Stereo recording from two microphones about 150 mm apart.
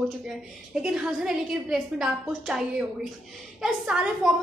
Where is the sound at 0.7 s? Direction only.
5° right (ahead or behind).